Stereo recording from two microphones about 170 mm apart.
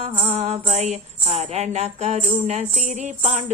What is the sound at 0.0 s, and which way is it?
Music, 40° right (ahead or behind).